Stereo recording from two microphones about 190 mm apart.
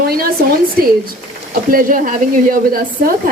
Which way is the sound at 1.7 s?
45° right (ahead or behind).